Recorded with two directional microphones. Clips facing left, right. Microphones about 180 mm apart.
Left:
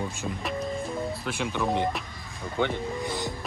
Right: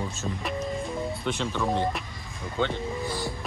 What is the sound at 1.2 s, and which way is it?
Speech, 10° left (ahead or behind).